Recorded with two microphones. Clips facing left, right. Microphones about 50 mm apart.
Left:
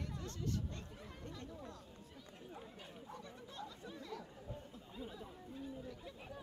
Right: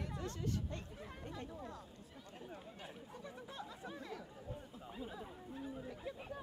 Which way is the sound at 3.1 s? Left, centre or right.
Centre.